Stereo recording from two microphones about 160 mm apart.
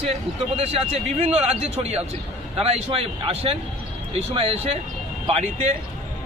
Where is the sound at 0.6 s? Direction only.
40° right (ahead or behind).